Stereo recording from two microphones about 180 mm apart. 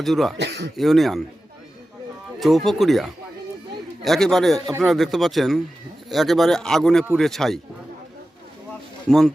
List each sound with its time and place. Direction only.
0.0 s speech: centre (ahead or behind)
0.3 s speech: 70° right (ahead or behind)
0.8 s speech: centre (ahead or behind)
2.4 s speech: centre (ahead or behind)
9.0 s speech: centre (ahead or behind)